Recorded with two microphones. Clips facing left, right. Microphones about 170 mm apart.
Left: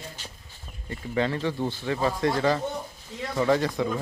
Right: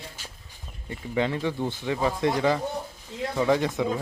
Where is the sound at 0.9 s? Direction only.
15° right (ahead or behind).